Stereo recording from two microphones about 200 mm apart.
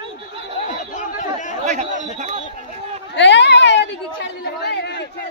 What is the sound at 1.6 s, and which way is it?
Chatter, 35° right (ahead or behind).